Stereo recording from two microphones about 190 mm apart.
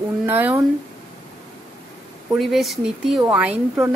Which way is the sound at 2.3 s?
Centre (ahead or behind).